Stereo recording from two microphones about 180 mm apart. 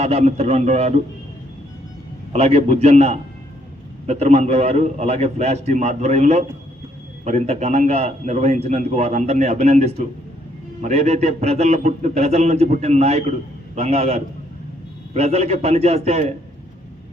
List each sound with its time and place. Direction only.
0.0 s a man's voice: 35° right (ahead or behind)
2.3 s a man's voice: 35° right (ahead or behind)